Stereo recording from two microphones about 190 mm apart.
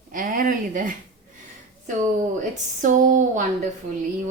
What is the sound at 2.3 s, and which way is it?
Speech, 40° right (ahead or behind).